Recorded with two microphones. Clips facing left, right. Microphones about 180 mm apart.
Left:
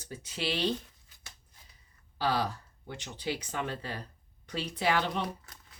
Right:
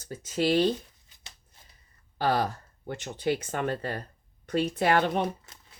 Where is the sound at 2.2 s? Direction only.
50° right (ahead or behind).